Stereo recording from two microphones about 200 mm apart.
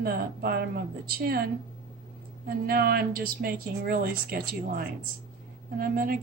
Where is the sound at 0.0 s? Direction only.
50° right (ahead or behind).